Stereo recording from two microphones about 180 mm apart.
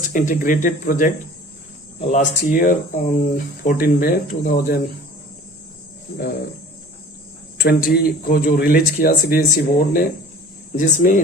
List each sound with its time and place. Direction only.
0.0 s speech: 45° left (ahead or behind)
7.6 s speech: 55° left (ahead or behind)